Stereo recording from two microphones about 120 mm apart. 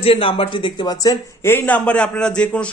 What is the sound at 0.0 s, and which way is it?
A man's voice, 50° left (ahead or behind).